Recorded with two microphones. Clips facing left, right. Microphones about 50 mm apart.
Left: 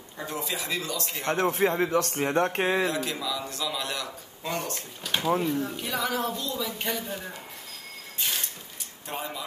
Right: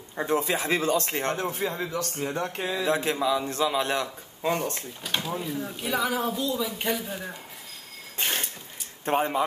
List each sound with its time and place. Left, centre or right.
0.2 s speech: right
1.3 s a man's voice: left
2.9 s a man's voice: right
5.5 s speech: centre
8.2 s a sound: right
9.0 s speech: right